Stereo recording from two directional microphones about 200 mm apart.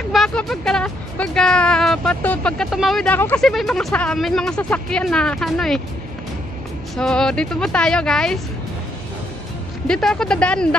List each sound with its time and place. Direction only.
0.1 s speech: centre (ahead or behind)
7.0 s speech: 5° left (ahead or behind)
9.8 s speech: 5° left (ahead or behind)